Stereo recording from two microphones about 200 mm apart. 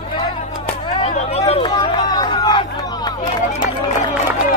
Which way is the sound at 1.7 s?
20° left (ahead or behind).